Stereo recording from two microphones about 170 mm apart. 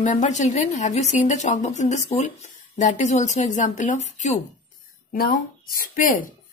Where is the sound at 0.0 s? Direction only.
50° left (ahead or behind).